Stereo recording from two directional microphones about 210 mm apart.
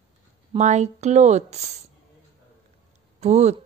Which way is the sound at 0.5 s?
35° right (ahead or behind).